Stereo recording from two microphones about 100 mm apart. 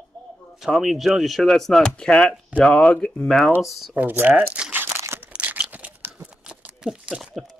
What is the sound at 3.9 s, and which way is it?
Speech, 15° right (ahead or behind).